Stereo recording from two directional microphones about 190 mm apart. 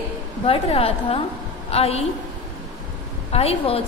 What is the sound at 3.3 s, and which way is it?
Speech, 30° left (ahead or behind).